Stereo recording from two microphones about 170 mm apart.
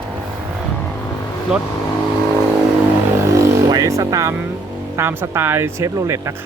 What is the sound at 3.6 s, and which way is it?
Music, 20° right (ahead or behind).